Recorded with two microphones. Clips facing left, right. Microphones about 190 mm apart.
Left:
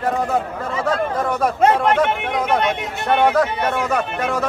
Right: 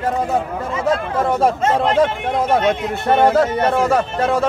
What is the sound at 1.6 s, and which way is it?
Speech, 65° left (ahead or behind).